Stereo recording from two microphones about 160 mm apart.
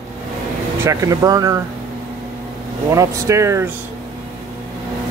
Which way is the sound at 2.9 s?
20° right (ahead or behind).